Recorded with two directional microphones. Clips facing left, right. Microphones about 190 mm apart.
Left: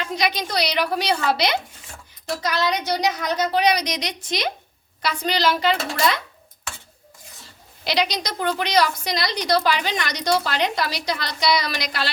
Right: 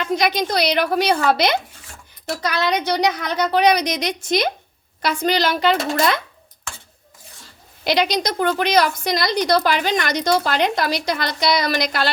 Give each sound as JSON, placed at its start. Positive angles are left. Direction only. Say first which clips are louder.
{"t": 0.0, "sound": "a woman's voice", "louder": "right 5 dB", "side_deg": -50}
{"t": 7.9, "sound": "a woman's voice", "louder": "right 4 dB", "side_deg": -50}